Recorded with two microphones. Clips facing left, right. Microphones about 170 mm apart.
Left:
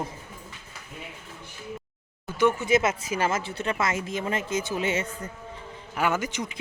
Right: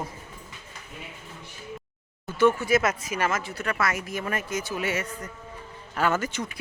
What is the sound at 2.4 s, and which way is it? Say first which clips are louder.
Speech: right 1 dB; 20° left (ahead or behind).